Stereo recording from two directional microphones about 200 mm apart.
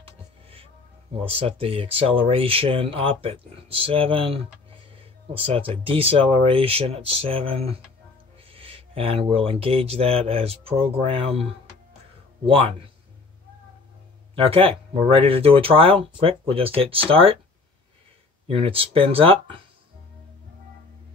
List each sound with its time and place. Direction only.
1.1 s speech: 30° right (ahead or behind)
14.3 s speech: 30° right (ahead or behind)
18.5 s speech: 25° right (ahead or behind)